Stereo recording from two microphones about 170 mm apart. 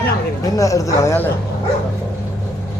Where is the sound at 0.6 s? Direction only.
20° left (ahead or behind).